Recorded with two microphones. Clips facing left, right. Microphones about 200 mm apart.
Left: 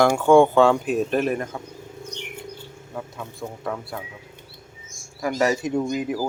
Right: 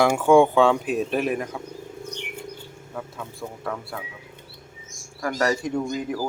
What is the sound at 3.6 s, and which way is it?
Speech, centre (ahead or behind).